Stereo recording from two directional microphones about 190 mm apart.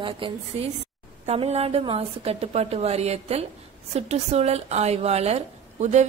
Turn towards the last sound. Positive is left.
turn(degrees=-35)  # may be behind; listen again after turning